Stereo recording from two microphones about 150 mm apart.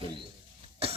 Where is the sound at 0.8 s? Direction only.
40° right (ahead or behind).